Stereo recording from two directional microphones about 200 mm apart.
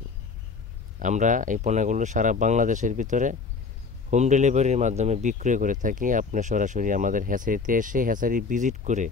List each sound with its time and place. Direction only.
0.9 s speech: 40° right (ahead or behind)